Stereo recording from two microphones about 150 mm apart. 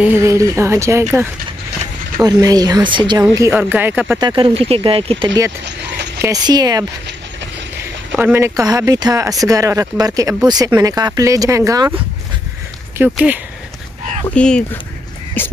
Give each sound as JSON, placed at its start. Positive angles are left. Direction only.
{"t": 0.0, "sound": "speech", "side_deg": -15}
{"t": 3.3, "sound": "speech", "side_deg": -15}
{"t": 4.2, "sound": "speech", "side_deg": -30}
{"t": 4.6, "sound": "speech", "side_deg": -40}
{"t": 6.2, "sound": "speech", "side_deg": -25}
{"t": 8.1, "sound": "speech", "side_deg": -15}
{"t": 13.1, "sound": "speech", "side_deg": -10}
{"t": 14.3, "sound": "speech", "side_deg": 5}